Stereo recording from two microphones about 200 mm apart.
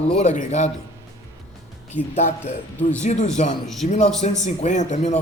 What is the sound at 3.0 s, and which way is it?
Speech, 35° left (ahead or behind).